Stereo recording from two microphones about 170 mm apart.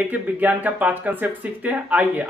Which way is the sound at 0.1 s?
10° right (ahead or behind).